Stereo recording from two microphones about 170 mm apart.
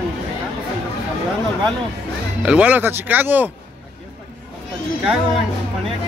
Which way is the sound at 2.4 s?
10° right (ahead or behind).